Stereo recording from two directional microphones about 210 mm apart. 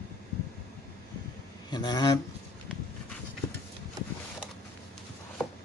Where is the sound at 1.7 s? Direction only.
20° left (ahead or behind).